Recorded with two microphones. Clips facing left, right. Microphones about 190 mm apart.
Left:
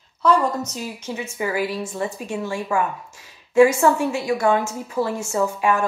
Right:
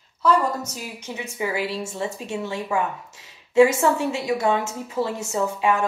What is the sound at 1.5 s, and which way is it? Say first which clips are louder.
Speech: left 2 dB; 25° right (ahead or behind).